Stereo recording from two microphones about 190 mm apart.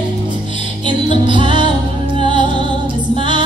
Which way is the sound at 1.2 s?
25° right (ahead or behind).